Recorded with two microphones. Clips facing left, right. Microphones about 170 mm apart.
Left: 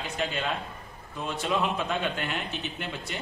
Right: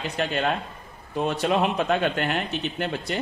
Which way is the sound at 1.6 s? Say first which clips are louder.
Right 6 dB; 65° right (ahead or behind).